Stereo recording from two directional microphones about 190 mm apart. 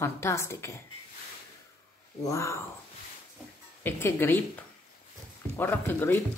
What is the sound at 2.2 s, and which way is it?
Speech, 15° left (ahead or behind).